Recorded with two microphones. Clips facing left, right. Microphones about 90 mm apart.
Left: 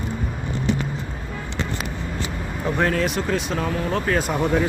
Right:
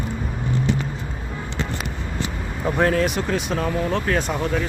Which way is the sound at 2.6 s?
5° right (ahead or behind).